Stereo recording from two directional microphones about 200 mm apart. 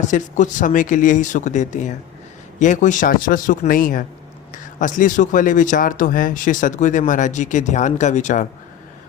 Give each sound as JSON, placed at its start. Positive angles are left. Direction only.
{"t": 0.0, "sound": "speech", "side_deg": 40}